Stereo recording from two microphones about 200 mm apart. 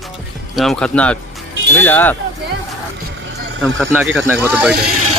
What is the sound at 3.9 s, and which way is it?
Speech, 5° right (ahead or behind).